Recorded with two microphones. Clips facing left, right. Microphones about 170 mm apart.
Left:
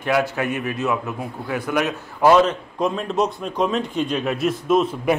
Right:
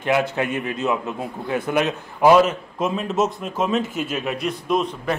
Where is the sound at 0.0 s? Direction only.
20° right (ahead or behind).